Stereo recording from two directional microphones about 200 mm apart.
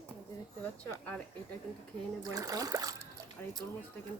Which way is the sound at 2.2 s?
15° right (ahead or behind).